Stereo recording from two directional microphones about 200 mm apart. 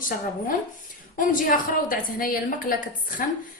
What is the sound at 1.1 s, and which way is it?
A woman's voice, 45° left (ahead or behind).